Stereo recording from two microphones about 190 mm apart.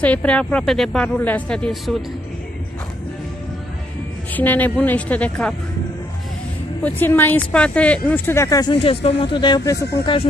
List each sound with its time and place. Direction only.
0.0 s a woman's voice: 5° left (ahead or behind)
4.3 s speech: 10° left (ahead or behind)
6.8 s speech: 10° left (ahead or behind)